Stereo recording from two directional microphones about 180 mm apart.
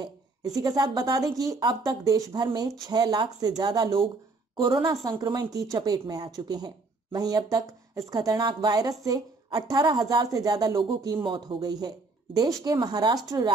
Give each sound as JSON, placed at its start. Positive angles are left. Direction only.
{"t": 0.6, "sound": "a woman's voice", "side_deg": -20}